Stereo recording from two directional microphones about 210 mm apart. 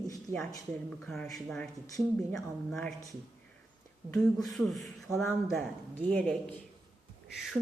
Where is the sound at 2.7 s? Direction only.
5° left (ahead or behind).